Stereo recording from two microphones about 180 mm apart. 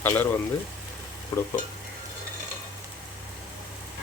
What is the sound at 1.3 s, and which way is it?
Stir, 20° left (ahead or behind).